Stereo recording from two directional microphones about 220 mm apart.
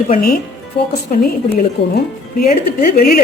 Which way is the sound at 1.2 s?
45° left (ahead or behind).